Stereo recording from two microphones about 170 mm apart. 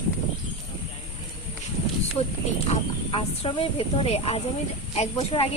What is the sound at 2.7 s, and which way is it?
Speech, 35° left (ahead or behind).